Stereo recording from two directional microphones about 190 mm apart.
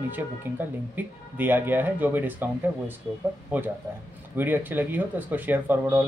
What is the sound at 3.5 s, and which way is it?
Speech, 10° right (ahead or behind).